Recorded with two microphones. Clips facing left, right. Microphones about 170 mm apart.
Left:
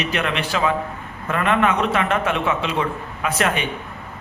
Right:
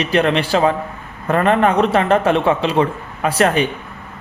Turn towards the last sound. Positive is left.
turn(degrees=-35)  # may be behind; listen again after turning